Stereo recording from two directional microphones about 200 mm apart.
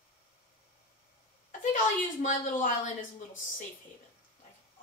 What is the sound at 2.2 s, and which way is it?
Speech, 40° left (ahead or behind).